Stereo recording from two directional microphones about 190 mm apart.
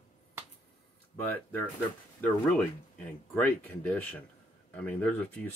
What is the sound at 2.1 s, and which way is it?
Speech, 5° left (ahead or behind).